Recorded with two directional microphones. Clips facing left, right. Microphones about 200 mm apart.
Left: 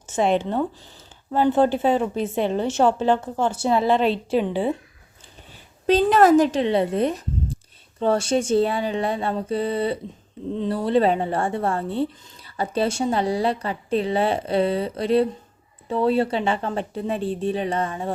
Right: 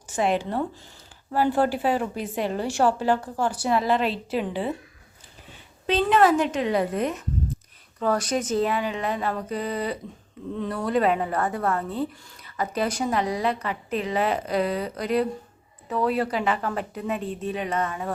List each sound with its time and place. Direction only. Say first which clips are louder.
0.3 s a woman's voice: left 4 dB; 25° left (ahead or behind)
4.0 s a woman's voice: left 5 dB; centre (ahead or behind)
5.8 s a woman's voice: left 4 dB; 40° left (ahead or behind)